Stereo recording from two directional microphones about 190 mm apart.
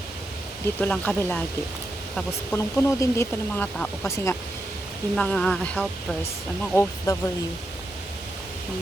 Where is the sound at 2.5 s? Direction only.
15° left (ahead or behind).